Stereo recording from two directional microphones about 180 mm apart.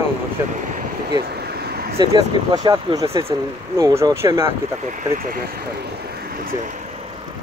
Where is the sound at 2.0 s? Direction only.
25° right (ahead or behind).